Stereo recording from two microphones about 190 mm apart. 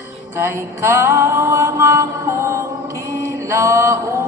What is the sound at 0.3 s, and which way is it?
Mantra, 15° right (ahead or behind).